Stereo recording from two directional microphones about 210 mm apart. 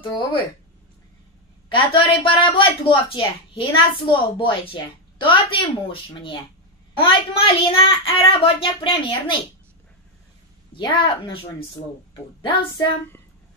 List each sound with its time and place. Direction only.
1.7 s a woman's voice: 25° left (ahead or behind)
10.7 s a woman's voice: 25° left (ahead or behind)
12.4 s a woman's voice: 20° left (ahead or behind)